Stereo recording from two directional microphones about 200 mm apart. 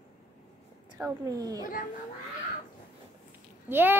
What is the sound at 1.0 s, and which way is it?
Speech, 20° right (ahead or behind).